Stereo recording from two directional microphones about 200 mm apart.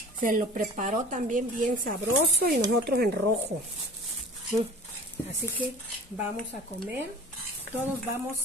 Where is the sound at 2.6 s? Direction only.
50° right (ahead or behind).